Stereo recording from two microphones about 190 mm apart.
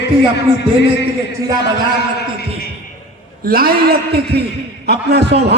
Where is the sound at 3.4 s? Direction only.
50° right (ahead or behind).